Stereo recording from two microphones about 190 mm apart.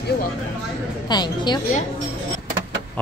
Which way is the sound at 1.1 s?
20° left (ahead or behind).